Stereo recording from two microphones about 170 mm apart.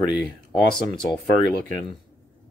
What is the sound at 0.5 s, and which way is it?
Speech, 5° left (ahead or behind).